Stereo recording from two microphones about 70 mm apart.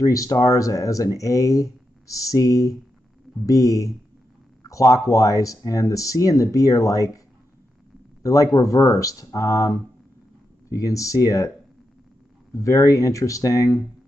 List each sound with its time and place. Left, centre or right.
0.0 s speech: left
8.2 s speech: left
12.5 s speech: left